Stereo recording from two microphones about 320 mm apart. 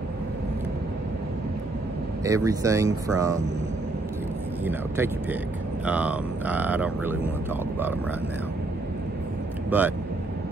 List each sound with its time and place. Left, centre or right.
2.2 s speech: centre
4.6 s speech: centre
9.7 s speech: centre